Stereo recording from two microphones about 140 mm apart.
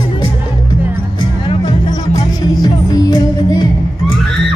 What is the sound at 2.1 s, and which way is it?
Music, 30° left (ahead or behind).